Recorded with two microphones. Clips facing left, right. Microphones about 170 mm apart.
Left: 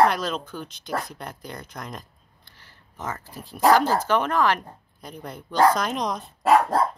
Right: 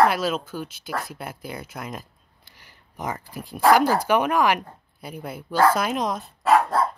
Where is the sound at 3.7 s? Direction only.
10° right (ahead or behind).